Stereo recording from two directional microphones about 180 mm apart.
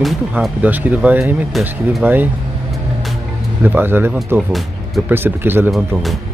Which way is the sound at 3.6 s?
10° right (ahead or behind).